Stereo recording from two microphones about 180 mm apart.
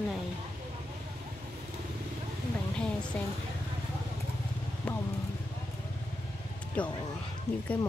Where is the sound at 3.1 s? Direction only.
5° left (ahead or behind).